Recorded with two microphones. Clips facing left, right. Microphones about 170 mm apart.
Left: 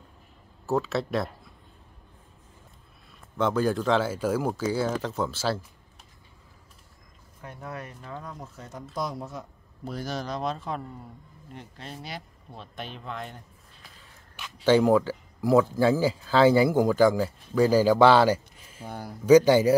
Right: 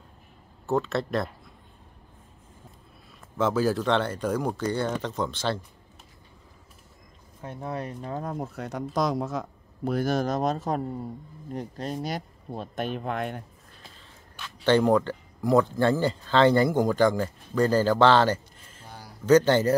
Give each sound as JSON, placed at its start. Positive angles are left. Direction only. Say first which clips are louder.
{"t": 0.7, "sound": "speech", "louder": "even", "side_deg": 0}
{"t": 3.3, "sound": "speech", "louder": "right 1 dB", "side_deg": -5}
{"t": 7.4, "sound": "speech", "louder": "right 5 dB", "side_deg": -25}
{"t": 9.9, "sound": "speech", "louder": "right 7 dB", "side_deg": -50}
{"t": 14.4, "sound": "speech", "louder": "left 1 dB", "side_deg": 5}
{"t": 18.9, "sound": "a sound", "louder": "left 8 dB", "side_deg": 55}
{"t": 19.2, "sound": "a man's voice", "louder": "left 2 dB", "side_deg": 10}